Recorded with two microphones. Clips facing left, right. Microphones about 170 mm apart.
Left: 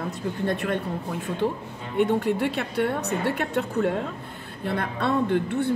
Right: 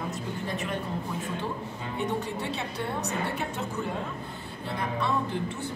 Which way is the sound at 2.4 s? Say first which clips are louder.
Left 8 dB; 65° left (ahead or behind).